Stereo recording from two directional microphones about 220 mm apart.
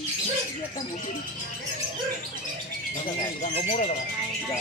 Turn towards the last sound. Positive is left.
turn(degrees=30)  # may be behind; listen again after turning